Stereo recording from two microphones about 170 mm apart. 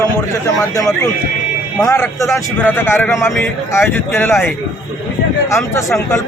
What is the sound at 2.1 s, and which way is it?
Speech, 20° left (ahead or behind).